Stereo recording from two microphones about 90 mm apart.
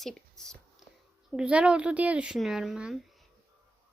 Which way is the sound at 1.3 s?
10° right (ahead or behind).